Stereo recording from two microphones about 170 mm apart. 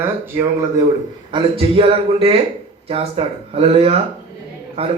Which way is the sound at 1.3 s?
35° right (ahead or behind).